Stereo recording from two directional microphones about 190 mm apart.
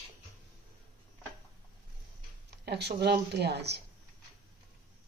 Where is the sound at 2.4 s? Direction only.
60° right (ahead or behind).